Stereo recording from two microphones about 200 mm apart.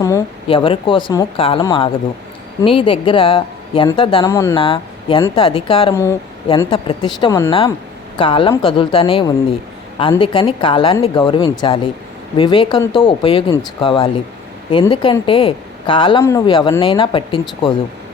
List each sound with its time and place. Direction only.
0.4 s speech: 25° left (ahead or behind)
4.6 s speech: 25° left (ahead or behind)
5.9 s speech: 15° left (ahead or behind)
7.3 s speech: 15° left (ahead or behind)
8.2 s speech: 25° left (ahead or behind)